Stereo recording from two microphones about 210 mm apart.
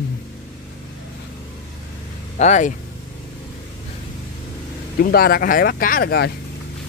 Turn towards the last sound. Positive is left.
turn(degrees=50)  # may be behind; listen again after turning